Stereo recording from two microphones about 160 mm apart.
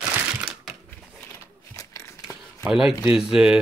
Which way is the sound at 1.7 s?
20° left (ahead or behind).